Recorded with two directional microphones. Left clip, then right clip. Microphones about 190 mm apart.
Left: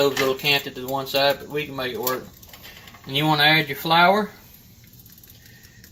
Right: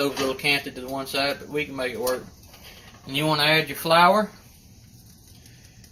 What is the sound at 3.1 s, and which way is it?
Speech, 35° left (ahead or behind).